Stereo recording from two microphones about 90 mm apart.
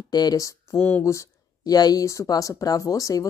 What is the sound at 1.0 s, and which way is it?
Speech, 40° left (ahead or behind).